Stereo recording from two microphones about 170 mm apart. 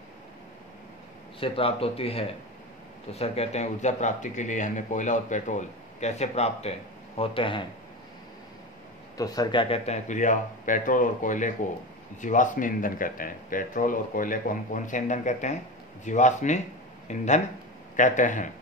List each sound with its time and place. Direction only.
1.4 s speech: 35° left (ahead or behind)
9.1 s speech: 20° left (ahead or behind); by 18.5 s 50° left (ahead or behind)